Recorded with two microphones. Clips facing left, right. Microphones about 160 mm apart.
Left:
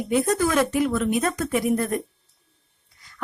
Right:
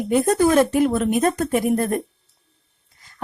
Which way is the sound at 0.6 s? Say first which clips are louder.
Right 4 dB; 45° right (ahead or behind).